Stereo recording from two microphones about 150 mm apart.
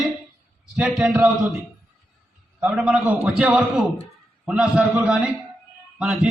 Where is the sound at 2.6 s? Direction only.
10° right (ahead or behind).